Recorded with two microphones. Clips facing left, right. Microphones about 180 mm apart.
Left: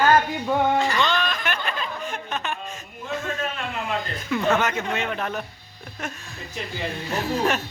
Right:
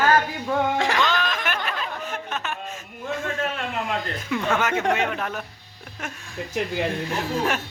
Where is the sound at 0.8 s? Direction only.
90° right.